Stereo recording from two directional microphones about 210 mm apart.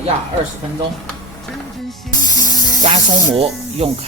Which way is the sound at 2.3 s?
20° left (ahead or behind).